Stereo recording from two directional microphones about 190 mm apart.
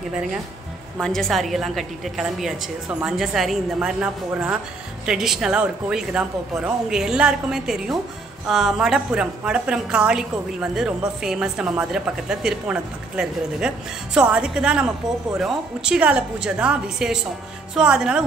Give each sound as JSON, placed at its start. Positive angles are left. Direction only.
{"t": 1.0, "sound": "a woman's voice", "side_deg": 5}